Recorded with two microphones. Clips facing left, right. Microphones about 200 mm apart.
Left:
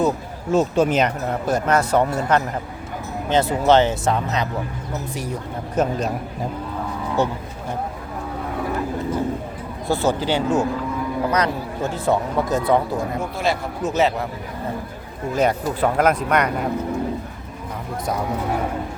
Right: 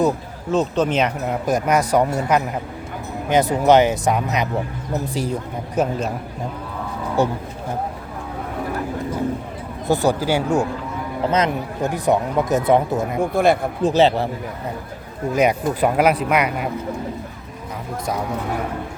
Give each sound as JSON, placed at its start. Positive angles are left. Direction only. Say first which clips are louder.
{"t": 0.5, "sound": "speech", "louder": "left 1 dB", "side_deg": 5}
{"t": 1.3, "sound": "speech", "louder": "right 1 dB", "side_deg": -15}
{"t": 4.9, "sound": "speech", "louder": "right 4 dB", "side_deg": -30}
{"t": 5.7, "sound": "speech", "louder": "even", "side_deg": -10}
{"t": 9.8, "sound": "speech", "louder": "right 2 dB", "side_deg": -15}
{"t": 13.3, "sound": "speech", "louder": "right 8 dB", "side_deg": -55}
{"t": 13.8, "sound": "speech", "louder": "right 4 dB", "side_deg": -30}
{"t": 15.4, "sound": "speech", "louder": "right 2 dB", "side_deg": -15}